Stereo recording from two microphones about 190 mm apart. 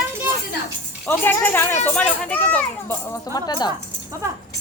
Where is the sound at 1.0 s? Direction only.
10° left (ahead or behind).